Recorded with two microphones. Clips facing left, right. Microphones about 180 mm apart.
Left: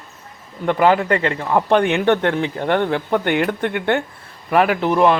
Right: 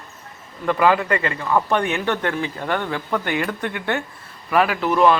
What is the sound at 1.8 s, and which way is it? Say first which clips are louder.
Speech: left 6 dB; 65° left (ahead or behind).